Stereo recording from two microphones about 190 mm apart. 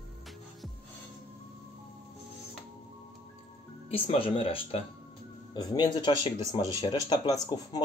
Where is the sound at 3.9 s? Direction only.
30° left (ahead or behind).